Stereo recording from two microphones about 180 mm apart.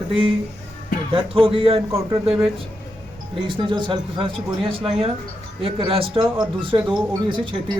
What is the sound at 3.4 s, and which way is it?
Speech, 25° right (ahead or behind).